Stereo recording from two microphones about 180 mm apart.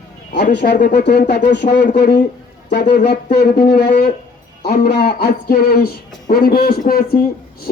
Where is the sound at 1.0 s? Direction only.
65° left (ahead or behind).